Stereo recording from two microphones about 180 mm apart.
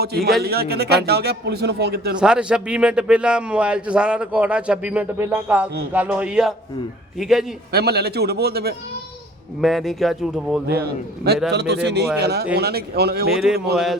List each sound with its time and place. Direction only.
0.4 s a man's voice: 60° right (ahead or behind)
2.1 s a man's voice: 5° right (ahead or behind)
7.7 s a man's voice: 60° right (ahead or behind)
9.6 s a man's voice: centre (ahead or behind)
10.7 s a man's voice: 60° right (ahead or behind)
13.3 s a man's voice: 5° right (ahead or behind)